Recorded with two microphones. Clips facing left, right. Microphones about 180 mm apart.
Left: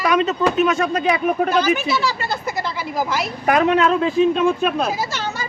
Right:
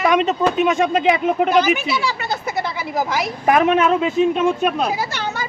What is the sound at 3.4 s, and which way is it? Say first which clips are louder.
Speech: right 1 dB; 20° right (ahead or behind).